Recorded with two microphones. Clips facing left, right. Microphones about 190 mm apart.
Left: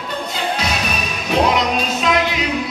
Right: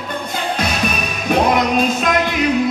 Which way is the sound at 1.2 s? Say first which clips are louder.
Right 2 dB; 50° right (ahead or behind).